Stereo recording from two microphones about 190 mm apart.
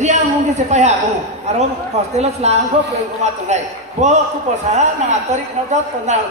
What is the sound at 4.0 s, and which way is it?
Speech, 40° right (ahead or behind).